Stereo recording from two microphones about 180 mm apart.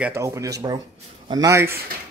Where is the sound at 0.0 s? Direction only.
15° right (ahead or behind).